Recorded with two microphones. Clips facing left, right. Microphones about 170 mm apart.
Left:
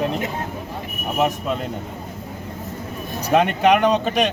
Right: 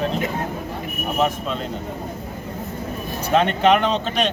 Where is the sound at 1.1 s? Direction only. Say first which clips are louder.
Left 1 dB; 15° left (ahead or behind).